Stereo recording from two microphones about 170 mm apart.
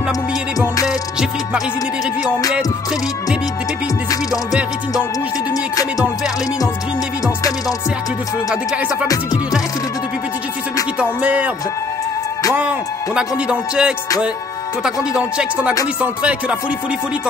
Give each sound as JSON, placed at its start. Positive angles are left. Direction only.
{"t": 5.5, "sound": "music", "side_deg": 20}
{"t": 9.0, "sound": "music", "side_deg": 20}
{"t": 11.0, "sound": "speech", "side_deg": -10}
{"t": 12.5, "sound": "music", "side_deg": -5}
{"t": 14.8, "sound": "speech", "side_deg": -5}